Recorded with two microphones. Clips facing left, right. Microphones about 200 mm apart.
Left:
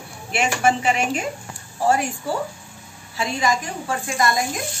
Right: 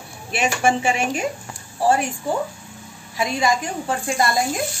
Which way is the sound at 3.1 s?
25° right (ahead or behind).